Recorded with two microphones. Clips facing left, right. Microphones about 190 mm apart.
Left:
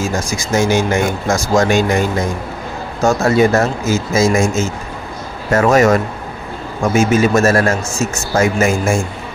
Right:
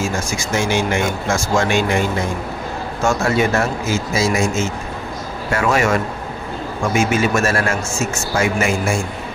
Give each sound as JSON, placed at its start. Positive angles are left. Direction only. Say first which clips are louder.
{"t": 0.3, "sound": "speech", "louder": "left 7 dB", "side_deg": 40}
{"t": 3.0, "sound": "speech", "louder": "left 5 dB", "side_deg": 35}